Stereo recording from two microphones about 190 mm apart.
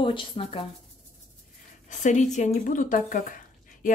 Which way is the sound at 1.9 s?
40° left (ahead or behind).